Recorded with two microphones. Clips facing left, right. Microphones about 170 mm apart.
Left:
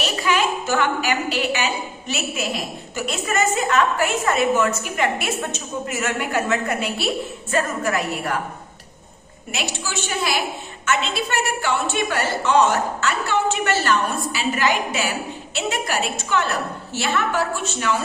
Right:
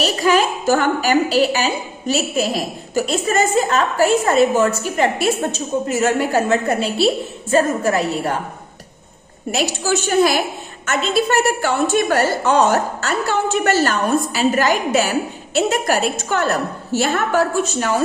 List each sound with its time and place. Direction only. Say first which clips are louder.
0.0 s a woman's voice: right 5 dB; 40° right (ahead or behind)
9.5 s a woman's voice: right 9 dB; 40° right (ahead or behind)